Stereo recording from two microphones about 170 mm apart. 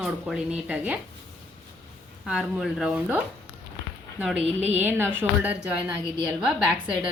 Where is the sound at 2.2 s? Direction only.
5° right (ahead or behind).